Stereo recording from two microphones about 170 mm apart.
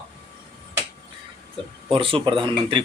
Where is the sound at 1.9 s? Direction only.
30° right (ahead or behind).